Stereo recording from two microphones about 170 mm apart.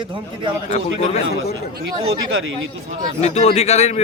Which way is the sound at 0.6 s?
40° left (ahead or behind).